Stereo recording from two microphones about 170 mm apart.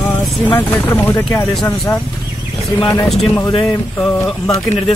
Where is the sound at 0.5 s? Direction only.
15° left (ahead or behind).